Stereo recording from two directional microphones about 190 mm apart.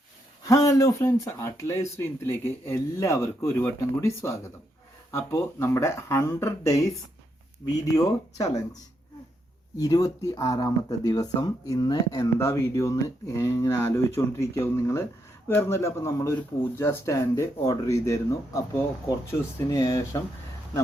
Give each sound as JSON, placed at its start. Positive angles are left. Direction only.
{"t": 0.4, "sound": "speech", "side_deg": 15}
{"t": 9.7, "sound": "speech", "side_deg": 20}